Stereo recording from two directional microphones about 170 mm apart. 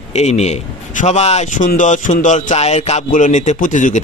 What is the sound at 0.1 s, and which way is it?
A man's voice, 40° left (ahead or behind).